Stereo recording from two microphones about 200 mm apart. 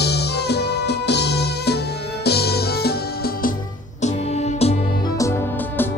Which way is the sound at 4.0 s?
35° left (ahead or behind).